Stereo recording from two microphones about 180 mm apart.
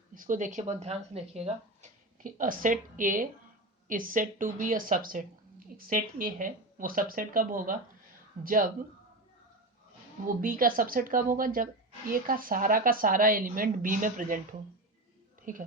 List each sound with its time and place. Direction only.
0.1 s speech: 45° right (ahead or behind)
10.4 s speech: 50° right (ahead or behind)
15.5 s speech: 50° right (ahead or behind)